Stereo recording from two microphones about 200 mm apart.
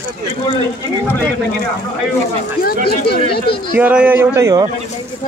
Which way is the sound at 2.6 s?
50° left (ahead or behind).